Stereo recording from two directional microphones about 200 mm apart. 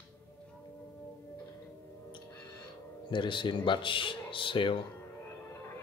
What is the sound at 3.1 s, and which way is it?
Speech, 25° left (ahead or behind).